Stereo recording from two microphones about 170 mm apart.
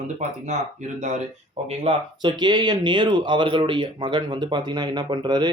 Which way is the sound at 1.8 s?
30° right (ahead or behind).